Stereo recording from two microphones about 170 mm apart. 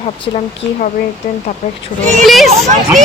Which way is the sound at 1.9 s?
50° left (ahead or behind).